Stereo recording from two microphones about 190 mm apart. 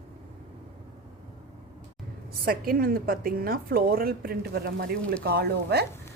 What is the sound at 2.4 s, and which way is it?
A woman's voice, 50° right (ahead or behind).